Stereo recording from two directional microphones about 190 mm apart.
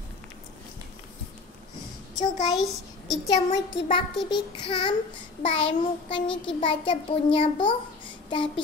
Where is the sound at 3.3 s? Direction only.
25° left (ahead or behind).